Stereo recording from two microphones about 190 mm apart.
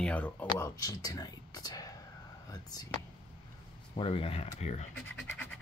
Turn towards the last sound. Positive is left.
turn(degrees=5)  # may be behind; listen again after turning